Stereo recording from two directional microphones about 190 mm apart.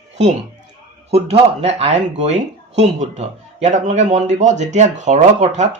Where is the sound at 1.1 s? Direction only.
35° right (ahead or behind).